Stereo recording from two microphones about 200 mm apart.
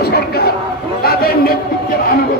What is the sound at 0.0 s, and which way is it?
Chatter, 50° left (ahead or behind).